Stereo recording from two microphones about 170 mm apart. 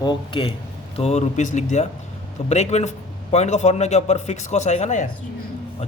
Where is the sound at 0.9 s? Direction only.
40° left (ahead or behind).